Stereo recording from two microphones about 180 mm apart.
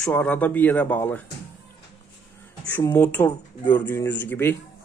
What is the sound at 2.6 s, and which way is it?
Speech, 10° left (ahead or behind).